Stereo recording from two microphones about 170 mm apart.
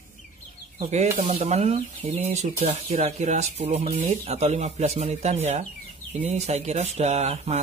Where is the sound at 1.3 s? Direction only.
40° right (ahead or behind).